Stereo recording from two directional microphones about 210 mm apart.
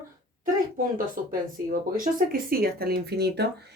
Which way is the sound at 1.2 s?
40° right (ahead or behind).